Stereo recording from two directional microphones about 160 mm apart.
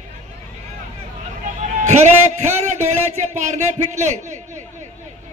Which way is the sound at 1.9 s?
45° right (ahead or behind).